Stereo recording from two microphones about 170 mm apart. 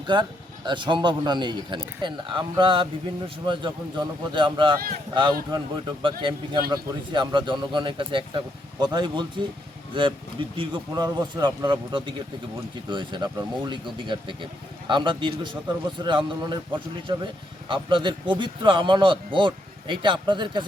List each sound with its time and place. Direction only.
0.1 s a man's voice: 25° right (ahead or behind)